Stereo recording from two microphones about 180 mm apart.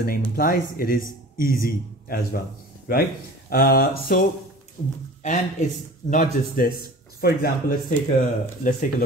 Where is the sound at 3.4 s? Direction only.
55° left (ahead or behind).